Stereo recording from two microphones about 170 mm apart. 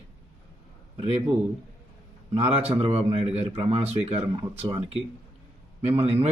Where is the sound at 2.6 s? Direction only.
35° right (ahead or behind).